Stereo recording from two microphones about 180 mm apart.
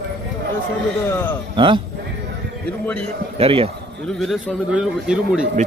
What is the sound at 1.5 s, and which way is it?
Speech, 25° right (ahead or behind).